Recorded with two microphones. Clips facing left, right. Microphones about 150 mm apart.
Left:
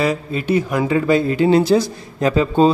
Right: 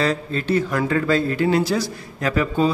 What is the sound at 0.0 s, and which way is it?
Speech, 10° left (ahead or behind).